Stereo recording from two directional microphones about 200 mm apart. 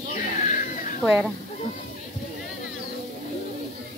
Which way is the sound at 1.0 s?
5° right (ahead or behind).